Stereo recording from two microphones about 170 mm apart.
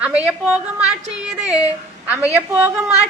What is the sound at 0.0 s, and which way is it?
A woman's voice, 5° right (ahead or behind).